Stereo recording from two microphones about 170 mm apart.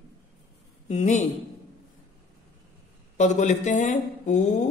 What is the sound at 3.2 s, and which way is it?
Speech, 45° left (ahead or behind).